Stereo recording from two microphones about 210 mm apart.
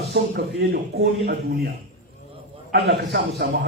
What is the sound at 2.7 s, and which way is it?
Speech, 50° right (ahead or behind).